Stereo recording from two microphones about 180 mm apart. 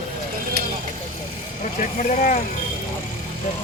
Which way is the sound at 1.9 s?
50° left (ahead or behind).